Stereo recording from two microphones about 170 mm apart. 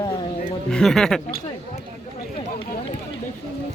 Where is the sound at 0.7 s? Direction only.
Centre (ahead or behind).